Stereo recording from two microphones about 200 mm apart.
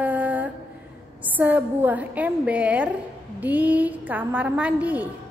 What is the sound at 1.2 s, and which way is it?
A woman's voice, 10° right (ahead or behind).